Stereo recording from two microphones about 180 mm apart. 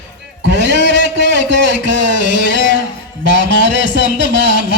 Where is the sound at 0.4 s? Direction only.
75° right (ahead or behind).